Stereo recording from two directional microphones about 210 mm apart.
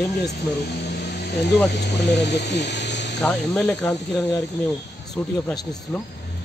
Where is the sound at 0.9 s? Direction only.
50° left (ahead or behind).